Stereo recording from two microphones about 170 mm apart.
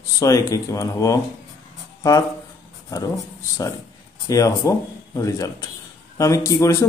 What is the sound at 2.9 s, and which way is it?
Speech, 20° left (ahead or behind).